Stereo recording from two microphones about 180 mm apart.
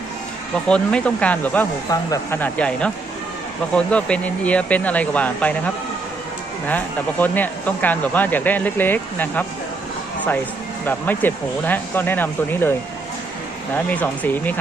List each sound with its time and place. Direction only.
0.7 s speech: 5° left (ahead or behind)
1.9 s speech: 20° left (ahead or behind)
6.7 s speech: 10° left (ahead or behind)
10.8 s speech: 10° left (ahead or behind)
13.7 s speech: 10° left (ahead or behind)